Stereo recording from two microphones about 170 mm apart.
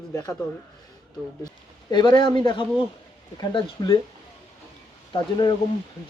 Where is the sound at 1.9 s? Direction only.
25° left (ahead or behind).